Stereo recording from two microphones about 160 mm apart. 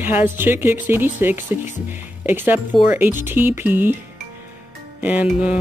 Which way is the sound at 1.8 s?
10° right (ahead or behind).